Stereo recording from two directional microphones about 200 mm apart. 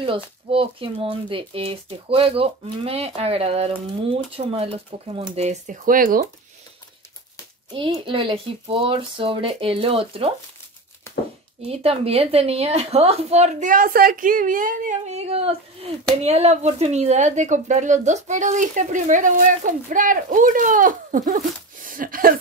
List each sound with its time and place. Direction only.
0.0 s speech: 25° right (ahead or behind); by 6.2 s 45° right (ahead or behind)
7.7 s speech: 25° right (ahead or behind)
11.1 s a sound: 15° left (ahead or behind)
11.6 s speech: 30° right (ahead or behind)